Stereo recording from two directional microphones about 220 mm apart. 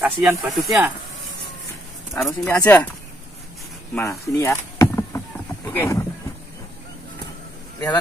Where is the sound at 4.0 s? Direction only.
10° left (ahead or behind).